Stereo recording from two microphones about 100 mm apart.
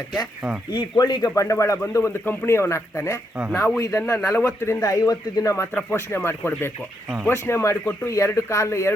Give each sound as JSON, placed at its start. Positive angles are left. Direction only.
{"t": 0.7, "sound": "speech", "side_deg": 45}
{"t": 5.7, "sound": "speech", "side_deg": 20}